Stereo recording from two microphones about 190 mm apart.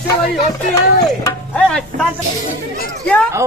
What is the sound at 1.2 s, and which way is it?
Speech, 5° left (ahead or behind).